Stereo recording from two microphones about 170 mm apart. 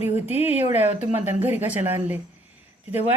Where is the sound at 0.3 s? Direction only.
40° left (ahead or behind).